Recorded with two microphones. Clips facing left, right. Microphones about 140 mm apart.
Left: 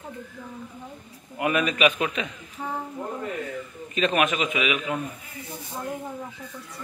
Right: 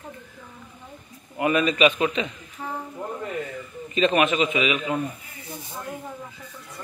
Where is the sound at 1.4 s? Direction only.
Centre (ahead or behind).